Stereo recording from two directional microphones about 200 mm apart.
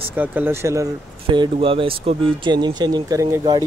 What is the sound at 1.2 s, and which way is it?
Speech, 25° right (ahead or behind).